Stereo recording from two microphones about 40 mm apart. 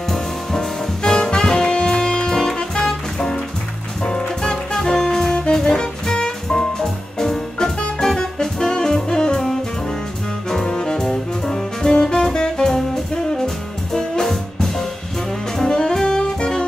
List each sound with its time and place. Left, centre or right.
0.1 s music: centre
10.5 s jazz: centre
13.9 s music: centre
15.7 s saxophone: centre